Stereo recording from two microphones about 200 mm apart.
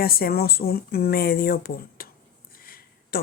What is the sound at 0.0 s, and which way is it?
Speech, 50° left (ahead or behind).